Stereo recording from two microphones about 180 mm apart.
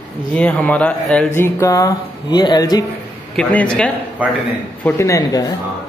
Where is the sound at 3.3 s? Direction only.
5° left (ahead or behind).